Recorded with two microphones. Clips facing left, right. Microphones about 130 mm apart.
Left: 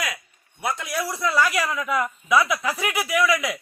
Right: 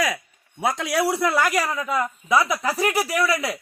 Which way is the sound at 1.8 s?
25° right (ahead or behind).